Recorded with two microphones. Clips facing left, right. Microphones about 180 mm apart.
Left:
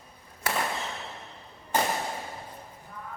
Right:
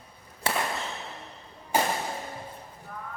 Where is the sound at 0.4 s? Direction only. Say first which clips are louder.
Right 1 dB; 25° right (ahead or behind).